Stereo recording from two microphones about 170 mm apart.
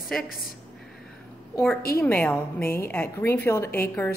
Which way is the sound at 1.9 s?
10° left (ahead or behind).